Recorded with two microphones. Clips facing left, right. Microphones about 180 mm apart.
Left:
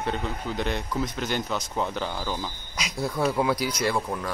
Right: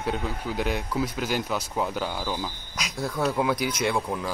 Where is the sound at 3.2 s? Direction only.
Centre (ahead or behind).